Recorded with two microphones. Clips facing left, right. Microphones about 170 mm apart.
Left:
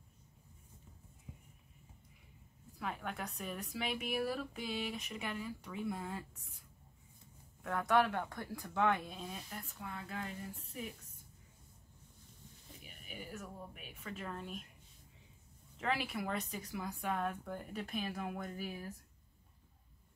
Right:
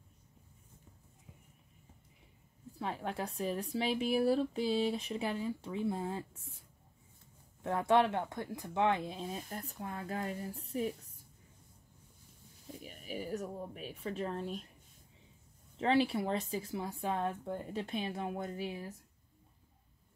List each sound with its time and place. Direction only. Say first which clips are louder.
1.3 s horse: left 5 dB; 10° left (ahead or behind)
2.8 s a woman's voice: right 4 dB; 30° right (ahead or behind)
7.6 s speech: right 3 dB; 25° right (ahead or behind)
12.8 s a woman's voice: right 9 dB; 35° right (ahead or behind)
15.8 s speech: right 8 dB; 30° right (ahead or behind)